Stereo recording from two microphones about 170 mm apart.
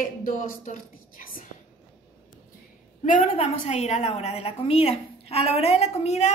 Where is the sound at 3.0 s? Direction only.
45° left (ahead or behind).